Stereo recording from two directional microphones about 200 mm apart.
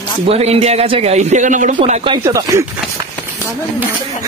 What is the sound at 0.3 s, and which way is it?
Speech, 30° right (ahead or behind).